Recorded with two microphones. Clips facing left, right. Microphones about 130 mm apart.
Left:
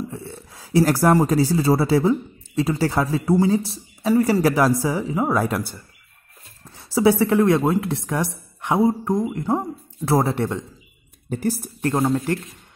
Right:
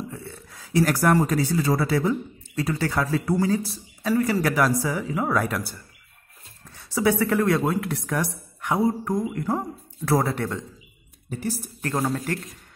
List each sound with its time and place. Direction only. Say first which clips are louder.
0.1 s speech: left 4 dB; 25° left (ahead or behind)
6.8 s a woman's voice: left 5 dB; 25° left (ahead or behind)
11.2 s a woman's voice: left 6 dB; 50° left (ahead or behind)